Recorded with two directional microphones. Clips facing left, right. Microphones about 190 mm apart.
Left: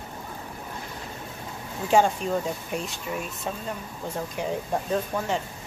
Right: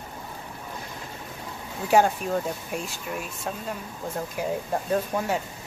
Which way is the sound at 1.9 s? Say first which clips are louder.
Even; 5° right (ahead or behind).